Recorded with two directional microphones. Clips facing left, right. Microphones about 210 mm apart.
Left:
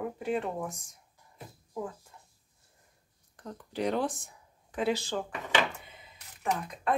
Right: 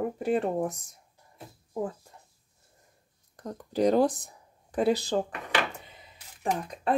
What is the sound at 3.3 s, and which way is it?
Speech, 40° right (ahead or behind).